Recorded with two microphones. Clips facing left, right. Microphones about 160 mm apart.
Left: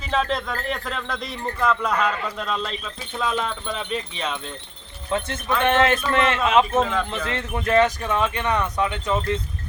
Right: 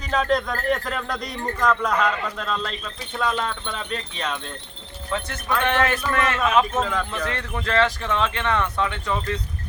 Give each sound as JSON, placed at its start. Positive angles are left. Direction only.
{"t": 0.1, "sound": "speech", "side_deg": 0}
{"t": 5.6, "sound": "speech", "side_deg": 20}
{"t": 6.7, "sound": "speech", "side_deg": 5}
{"t": 7.3, "sound": "speech", "side_deg": 20}